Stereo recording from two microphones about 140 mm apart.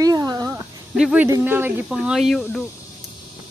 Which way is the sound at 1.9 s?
Centre (ahead or behind).